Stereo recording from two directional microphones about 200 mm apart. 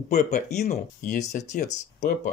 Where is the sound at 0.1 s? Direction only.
35° left (ahead or behind).